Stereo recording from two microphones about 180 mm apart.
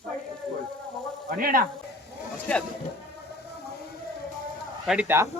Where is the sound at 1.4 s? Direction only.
55° right (ahead or behind).